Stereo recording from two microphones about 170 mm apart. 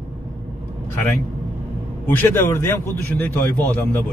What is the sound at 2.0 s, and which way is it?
A man's voice, 15° left (ahead or behind).